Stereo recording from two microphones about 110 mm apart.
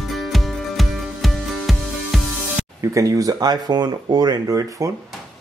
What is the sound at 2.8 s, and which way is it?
Speech, 30° right (ahead or behind).